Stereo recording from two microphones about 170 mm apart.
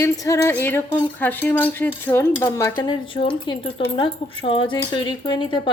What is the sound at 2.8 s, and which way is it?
A woman's voice, 30° left (ahead or behind).